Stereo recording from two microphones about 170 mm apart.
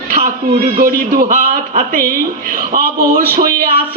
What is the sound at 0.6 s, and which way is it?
A man's voice, 60° right (ahead or behind).